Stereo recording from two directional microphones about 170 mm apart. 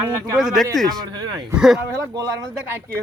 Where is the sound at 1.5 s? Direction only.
5° right (ahead or behind).